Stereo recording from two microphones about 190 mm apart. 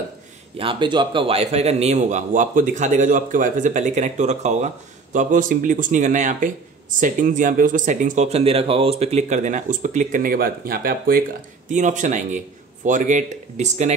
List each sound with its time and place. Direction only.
0.6 s a man's voice: 25° right (ahead or behind)